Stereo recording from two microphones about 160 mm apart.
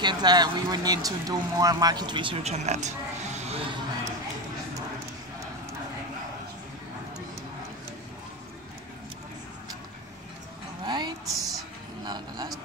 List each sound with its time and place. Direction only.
0.0 s speech: 25° right (ahead or behind); by 4.1 s 45° right (ahead or behind)
10.9 s vehicle: 25° right (ahead or behind)
12.1 s a sound: 25° right (ahead or behind)